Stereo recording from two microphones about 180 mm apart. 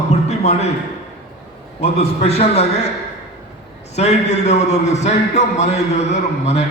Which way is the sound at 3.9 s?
35° left (ahead or behind).